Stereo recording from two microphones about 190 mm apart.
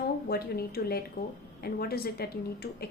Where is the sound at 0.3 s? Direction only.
55° left (ahead or behind).